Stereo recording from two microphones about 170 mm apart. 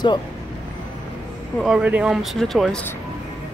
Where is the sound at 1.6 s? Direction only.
5° right (ahead or behind).